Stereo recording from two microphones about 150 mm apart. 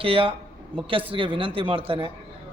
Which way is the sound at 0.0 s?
35° right (ahead or behind).